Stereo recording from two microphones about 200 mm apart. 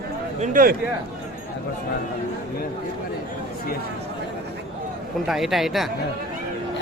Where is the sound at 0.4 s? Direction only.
45° right (ahead or behind).